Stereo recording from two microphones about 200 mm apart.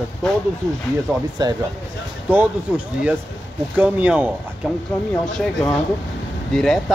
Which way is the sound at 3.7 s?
10° right (ahead or behind).